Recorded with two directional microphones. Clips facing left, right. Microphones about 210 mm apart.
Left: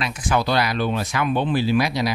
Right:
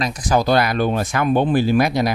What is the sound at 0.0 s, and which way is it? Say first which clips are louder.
Speech: right 4 dB; 40° right (ahead or behind).